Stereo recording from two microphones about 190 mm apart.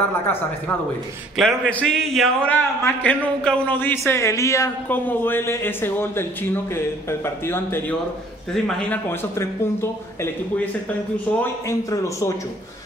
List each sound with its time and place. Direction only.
0.1 s a man's voice: 10° left (ahead or behind)